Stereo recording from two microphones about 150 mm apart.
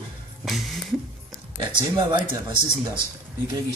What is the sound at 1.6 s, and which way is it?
Speech, 30° right (ahead or behind).